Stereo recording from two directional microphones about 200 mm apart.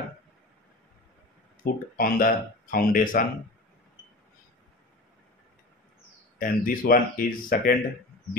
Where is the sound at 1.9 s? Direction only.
45° left (ahead or behind).